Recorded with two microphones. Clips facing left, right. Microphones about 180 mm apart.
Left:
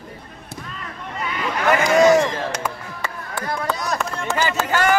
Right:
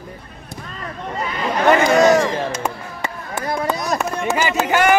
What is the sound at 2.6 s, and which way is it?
Chop, 20° right (ahead or behind).